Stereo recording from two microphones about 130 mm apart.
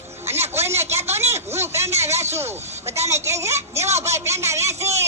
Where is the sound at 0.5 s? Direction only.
20° right (ahead or behind).